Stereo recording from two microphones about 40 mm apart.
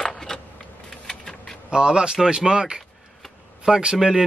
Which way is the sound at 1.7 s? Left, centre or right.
Right.